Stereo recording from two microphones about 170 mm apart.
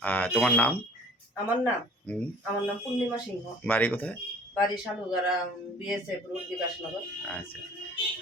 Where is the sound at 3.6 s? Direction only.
10° left (ahead or behind).